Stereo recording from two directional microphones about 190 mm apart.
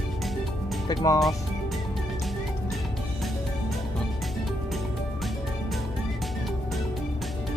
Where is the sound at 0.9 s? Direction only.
20° left (ahead or behind).